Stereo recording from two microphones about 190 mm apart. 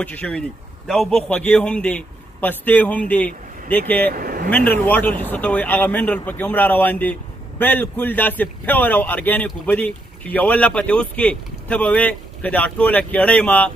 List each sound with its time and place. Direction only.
0.0 s speech: 5° left (ahead or behind)
4.1 s vehicle: 50° right (ahead or behind)
4.5 s speech: 10° left (ahead or behind)